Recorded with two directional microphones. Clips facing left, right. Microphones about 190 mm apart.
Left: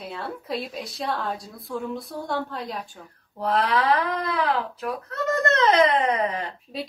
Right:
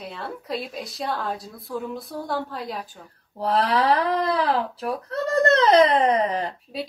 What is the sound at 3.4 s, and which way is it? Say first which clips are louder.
Speech: right 1 dB; 30° right (ahead or behind).